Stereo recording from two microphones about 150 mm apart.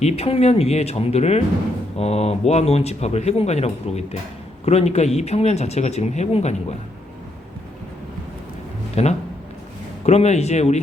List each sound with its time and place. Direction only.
0.0 s speech: 45° left (ahead or behind)
9.0 s speech: 45° left (ahead or behind)